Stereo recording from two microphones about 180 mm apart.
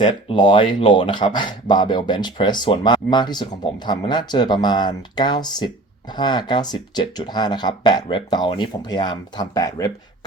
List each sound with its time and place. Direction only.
0.0 s speech: 25° left (ahead or behind)